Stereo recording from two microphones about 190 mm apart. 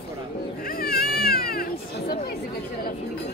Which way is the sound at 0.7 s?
50° left (ahead or behind).